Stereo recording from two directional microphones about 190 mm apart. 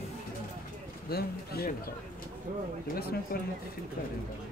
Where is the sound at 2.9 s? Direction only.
55° left (ahead or behind).